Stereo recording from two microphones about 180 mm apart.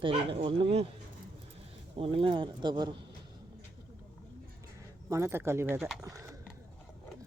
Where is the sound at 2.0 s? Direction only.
30° right (ahead or behind).